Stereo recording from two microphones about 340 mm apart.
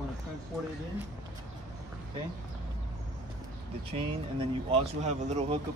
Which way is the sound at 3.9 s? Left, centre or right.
Centre.